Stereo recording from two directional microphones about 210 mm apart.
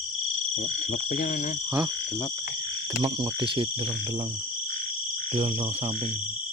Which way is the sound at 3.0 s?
25° right (ahead or behind).